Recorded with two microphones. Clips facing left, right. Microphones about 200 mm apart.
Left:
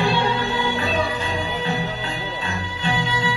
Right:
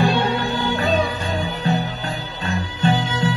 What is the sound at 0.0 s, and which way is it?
Music, 40° right (ahead or behind).